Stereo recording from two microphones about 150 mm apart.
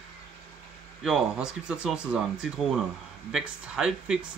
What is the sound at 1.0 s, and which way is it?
Speech, 5° right (ahead or behind).